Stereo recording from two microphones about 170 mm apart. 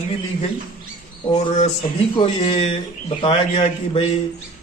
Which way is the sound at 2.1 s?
30° left (ahead or behind).